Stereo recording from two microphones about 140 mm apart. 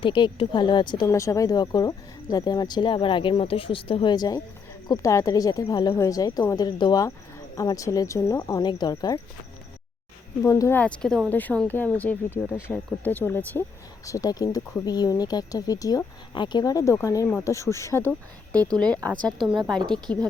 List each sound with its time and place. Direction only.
0.0 s speech: 35° left (ahead or behind)
1.1 s speech: 20° left (ahead or behind)
10.4 s speech: 20° left (ahead or behind)
14.0 s speech: 25° left (ahead or behind)
18.8 s speech: 5° left (ahead or behind)
19.8 s a woman's voice: 30° right (ahead or behind)